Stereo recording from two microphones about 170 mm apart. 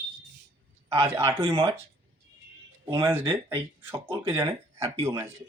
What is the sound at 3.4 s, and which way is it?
Speech, 15° right (ahead or behind).